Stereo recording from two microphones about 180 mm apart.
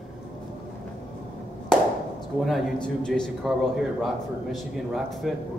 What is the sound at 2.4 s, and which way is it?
A man's voice, centre (ahead or behind).